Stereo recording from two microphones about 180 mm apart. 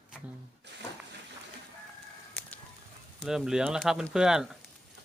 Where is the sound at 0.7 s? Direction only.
70° right (ahead or behind).